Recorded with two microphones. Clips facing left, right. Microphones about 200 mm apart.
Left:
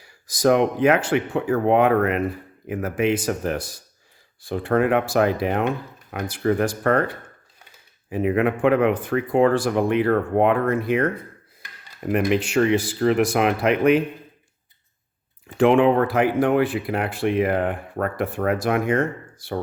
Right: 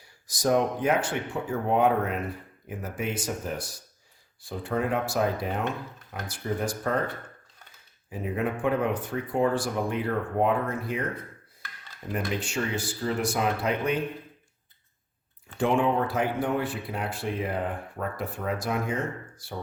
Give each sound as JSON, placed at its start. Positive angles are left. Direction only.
{"t": 0.0, "sound": "speech", "side_deg": 90}
{"t": 2.6, "sound": "speech", "side_deg": 90}
{"t": 8.1, "sound": "speech", "side_deg": 75}
{"t": 15.5, "sound": "speech", "side_deg": 90}